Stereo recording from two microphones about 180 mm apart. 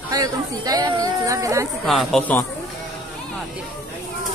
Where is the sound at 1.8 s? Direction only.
Centre (ahead or behind).